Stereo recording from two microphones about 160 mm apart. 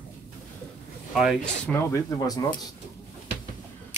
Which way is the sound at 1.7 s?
15° left (ahead or behind).